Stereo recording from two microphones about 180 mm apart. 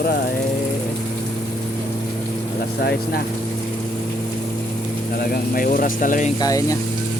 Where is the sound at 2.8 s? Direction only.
55° left (ahead or behind).